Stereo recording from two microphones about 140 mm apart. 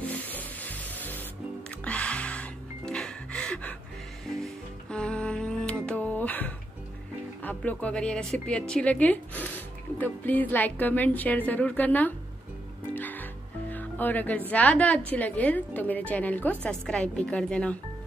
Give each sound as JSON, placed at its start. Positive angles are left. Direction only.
{"t": 0.0, "sound": "rub", "side_deg": 10}
{"t": 1.9, "sound": "music", "side_deg": 10}
{"t": 7.4, "sound": "a woman's voice", "side_deg": 10}
{"t": 12.9, "sound": "music", "side_deg": 10}
{"t": 14.5, "sound": "a woman's voice", "side_deg": 10}